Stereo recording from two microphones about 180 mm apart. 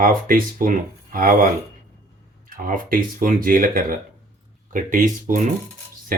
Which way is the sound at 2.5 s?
50° right (ahead or behind).